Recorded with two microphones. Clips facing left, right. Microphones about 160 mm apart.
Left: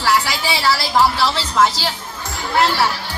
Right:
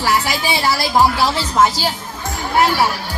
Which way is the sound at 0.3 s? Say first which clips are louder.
Right 1 dB; 15° right (ahead or behind).